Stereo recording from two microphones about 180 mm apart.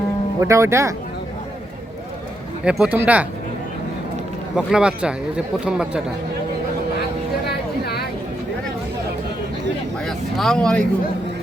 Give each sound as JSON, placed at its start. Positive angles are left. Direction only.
{"t": 0.3, "sound": "speech", "side_deg": -15}
{"t": 2.6, "sound": "speech", "side_deg": -5}
{"t": 4.5, "sound": "a man's voice", "side_deg": -5}
{"t": 10.1, "sound": "a sound", "side_deg": 0}